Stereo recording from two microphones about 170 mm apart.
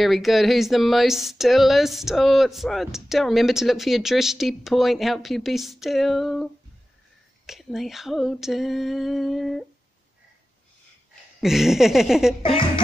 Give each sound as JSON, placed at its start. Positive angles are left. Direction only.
{"t": 0.0, "sound": "speech", "side_deg": 0}
{"t": 11.4, "sound": "speech", "side_deg": 0}
{"t": 12.4, "sound": "speech", "side_deg": 30}